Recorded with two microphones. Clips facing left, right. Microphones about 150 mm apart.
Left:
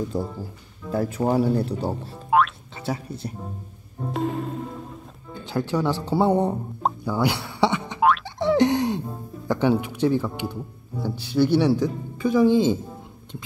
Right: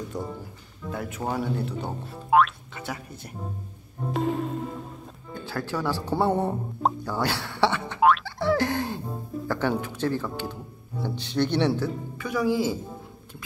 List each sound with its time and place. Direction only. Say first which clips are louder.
0.9 s speech: left 8 dB; 35° left (ahead or behind)
2.3 s speech: even; centre (ahead or behind)
2.7 s speech: left 6 dB; 30° left (ahead or behind)
4.1 s music: even; centre (ahead or behind)
5.4 s speech: left 5 dB; 15° left (ahead or behind)
7.1 s a sound: left 4 dB; 10° left (ahead or behind)
8.0 s music: even; centre (ahead or behind)
8.4 s boing: left 5 dB; 20° left (ahead or behind)
9.5 s speech: left 6 dB; 15° left (ahead or behind)
12.2 s a woman's voice: left 7 dB; 25° left (ahead or behind)